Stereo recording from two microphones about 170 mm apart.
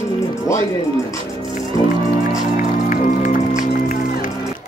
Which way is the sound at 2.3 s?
50° left (ahead or behind).